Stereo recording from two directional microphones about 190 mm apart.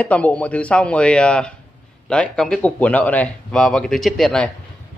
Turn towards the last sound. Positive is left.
turn(degrees=0)  # may be behind; listen again after turning